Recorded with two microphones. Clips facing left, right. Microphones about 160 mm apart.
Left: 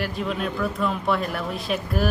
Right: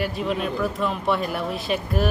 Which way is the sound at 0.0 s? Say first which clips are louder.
Right 2 dB; centre (ahead or behind).